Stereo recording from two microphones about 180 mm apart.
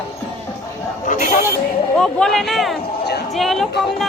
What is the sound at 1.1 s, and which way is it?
Speech, 45° left (ahead or behind).